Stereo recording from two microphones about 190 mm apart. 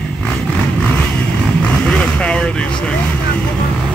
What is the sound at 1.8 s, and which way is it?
Vehicle, 5° left (ahead or behind).